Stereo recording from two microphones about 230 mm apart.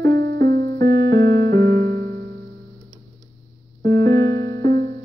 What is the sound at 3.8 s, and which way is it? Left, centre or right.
Music, centre.